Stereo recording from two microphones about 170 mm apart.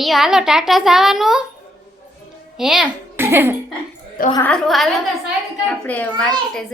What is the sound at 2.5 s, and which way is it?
Speech, 5° right (ahead or behind).